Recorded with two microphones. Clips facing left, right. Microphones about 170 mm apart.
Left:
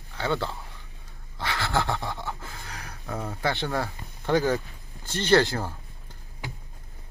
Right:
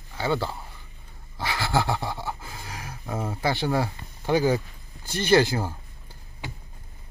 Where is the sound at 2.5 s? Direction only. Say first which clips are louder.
Right 2 dB; 15° right (ahead or behind).